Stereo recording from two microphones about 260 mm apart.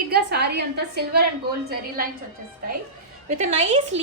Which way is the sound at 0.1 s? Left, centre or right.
Right.